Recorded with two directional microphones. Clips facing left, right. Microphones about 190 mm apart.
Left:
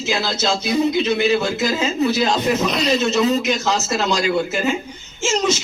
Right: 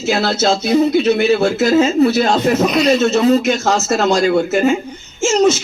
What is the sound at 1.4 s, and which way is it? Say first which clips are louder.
A man's voice: right 8 dB; 50° right (ahead or behind).